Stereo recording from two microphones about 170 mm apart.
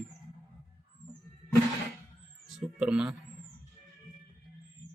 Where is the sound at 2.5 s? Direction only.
5° right (ahead or behind).